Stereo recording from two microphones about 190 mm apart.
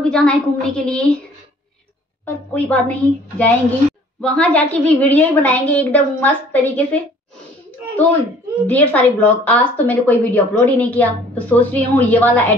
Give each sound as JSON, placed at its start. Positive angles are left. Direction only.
{"t": 0.1, "sound": "a woman's voice", "side_deg": 5}
{"t": 2.2, "sound": "a woman's voice", "side_deg": 10}
{"t": 8.6, "sound": "a woman's voice", "side_deg": 10}